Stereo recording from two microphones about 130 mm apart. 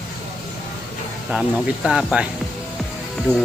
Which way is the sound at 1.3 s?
5° right (ahead or behind).